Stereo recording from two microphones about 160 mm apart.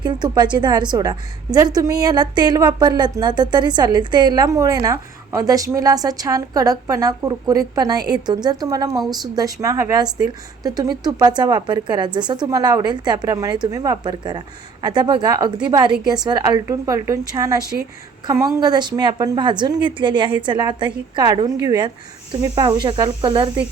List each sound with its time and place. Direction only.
0.0 s a woman's voice: 25° right (ahead or behind)